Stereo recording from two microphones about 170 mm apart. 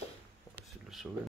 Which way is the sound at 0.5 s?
Centre (ahead or behind).